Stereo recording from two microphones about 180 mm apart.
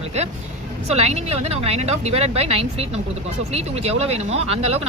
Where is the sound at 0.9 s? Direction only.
35° right (ahead or behind).